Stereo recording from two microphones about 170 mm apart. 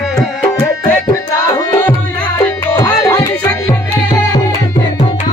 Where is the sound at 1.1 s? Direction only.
20° left (ahead or behind).